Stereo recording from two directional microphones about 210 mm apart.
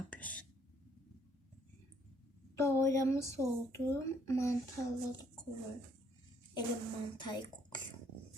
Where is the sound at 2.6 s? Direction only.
15° left (ahead or behind).